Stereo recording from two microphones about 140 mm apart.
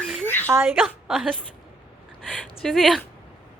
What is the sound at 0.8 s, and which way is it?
Speech, 5° right (ahead or behind).